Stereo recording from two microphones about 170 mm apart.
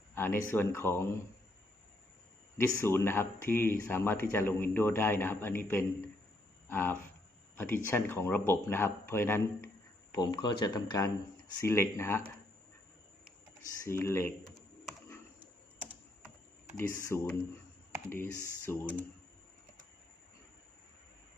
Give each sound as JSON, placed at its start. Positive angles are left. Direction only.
{"t": 0.1, "sound": "speech", "side_deg": 15}
{"t": 2.6, "sound": "speech", "side_deg": 15}
{"t": 10.1, "sound": "speech", "side_deg": 25}
{"t": 13.8, "sound": "speech", "side_deg": 15}
{"t": 16.9, "sound": "speech", "side_deg": 15}